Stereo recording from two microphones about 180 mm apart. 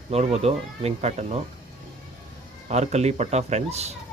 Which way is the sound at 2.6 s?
40° right (ahead or behind).